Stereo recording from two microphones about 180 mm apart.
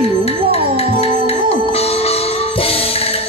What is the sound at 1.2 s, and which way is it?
Music, 35° left (ahead or behind).